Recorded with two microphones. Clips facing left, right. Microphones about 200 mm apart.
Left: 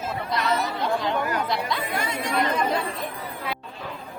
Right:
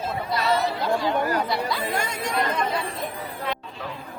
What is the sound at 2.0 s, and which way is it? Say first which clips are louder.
Speech: left 1 dB; 45° right (ahead or behind).